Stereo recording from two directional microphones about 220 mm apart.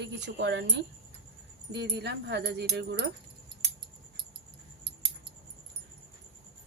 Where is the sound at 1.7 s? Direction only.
50° right (ahead or behind).